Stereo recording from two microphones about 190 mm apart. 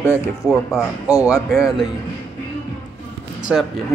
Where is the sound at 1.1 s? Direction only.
15° left (ahead or behind).